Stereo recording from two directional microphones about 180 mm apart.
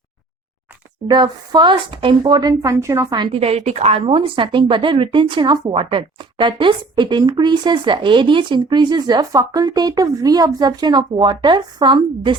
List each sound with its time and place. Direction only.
1.0 s a woman's voice: 25° right (ahead or behind)